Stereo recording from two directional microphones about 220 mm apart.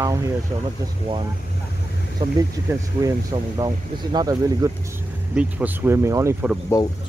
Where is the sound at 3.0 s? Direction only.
15° right (ahead or behind).